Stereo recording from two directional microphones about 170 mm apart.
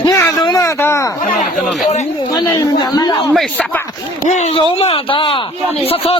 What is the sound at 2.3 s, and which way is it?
Speech, 20° left (ahead or behind).